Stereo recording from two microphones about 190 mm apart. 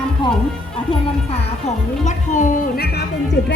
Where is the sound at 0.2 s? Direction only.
25° left (ahead or behind).